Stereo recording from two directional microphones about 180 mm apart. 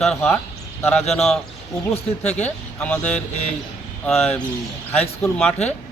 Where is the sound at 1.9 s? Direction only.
40° left (ahead or behind).